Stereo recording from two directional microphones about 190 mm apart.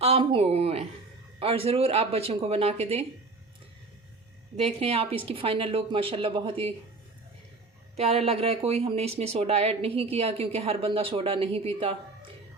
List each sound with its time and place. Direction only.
0.0 s a sound: 30° right (ahead or behind)
1.4 s speech: 30° right (ahead or behind)
4.5 s a woman's voice: 30° right (ahead or behind)
7.9 s speech: 30° right (ahead or behind)